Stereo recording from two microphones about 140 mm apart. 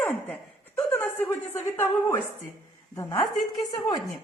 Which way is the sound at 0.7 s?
20° left (ahead or behind).